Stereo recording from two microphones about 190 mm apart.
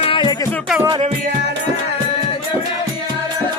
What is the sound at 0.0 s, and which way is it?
Music, 25° left (ahead or behind).